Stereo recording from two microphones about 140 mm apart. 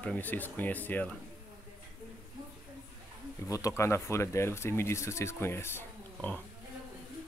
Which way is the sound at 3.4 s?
20° left (ahead or behind).